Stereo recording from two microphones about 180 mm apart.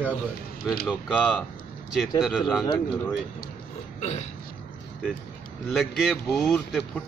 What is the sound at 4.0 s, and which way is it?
Speech, 35° left (ahead or behind).